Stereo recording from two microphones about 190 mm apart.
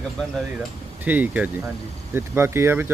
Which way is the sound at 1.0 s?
10° right (ahead or behind).